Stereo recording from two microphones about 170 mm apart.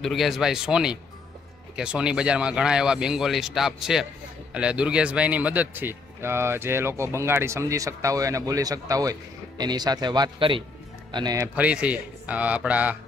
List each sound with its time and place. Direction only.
0.0 s speech: centre (ahead or behind)